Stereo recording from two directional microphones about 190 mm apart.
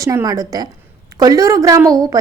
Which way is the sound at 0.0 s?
15° right (ahead or behind).